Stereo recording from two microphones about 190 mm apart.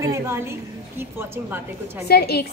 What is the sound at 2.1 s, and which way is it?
Speech, 55° left (ahead or behind).